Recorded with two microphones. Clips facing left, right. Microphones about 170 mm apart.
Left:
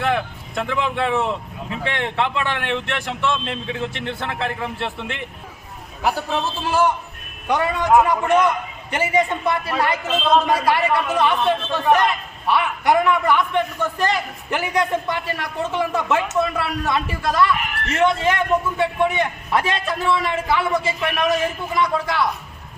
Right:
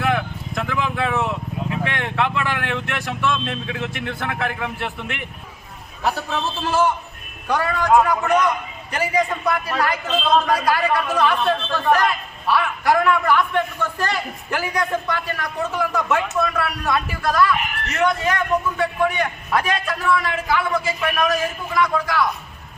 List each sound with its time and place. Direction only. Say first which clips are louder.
0.1 s vehicle: even; 25° left (ahead or behind)
1.8 s a man's voice: left 2 dB; 25° left (ahead or behind)
6.0 s a man's voice: left 1 dB; 10° left (ahead or behind)